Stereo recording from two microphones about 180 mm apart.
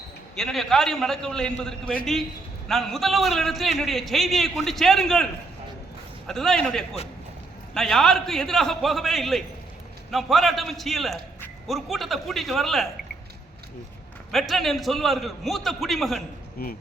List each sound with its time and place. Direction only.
0.3 s a man's voice: centre (ahead or behind)
14.3 s a man's voice: centre (ahead or behind)
16.6 s speech: 55° left (ahead or behind)